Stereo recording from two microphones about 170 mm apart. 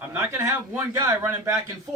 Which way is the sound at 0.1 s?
15° right (ahead or behind).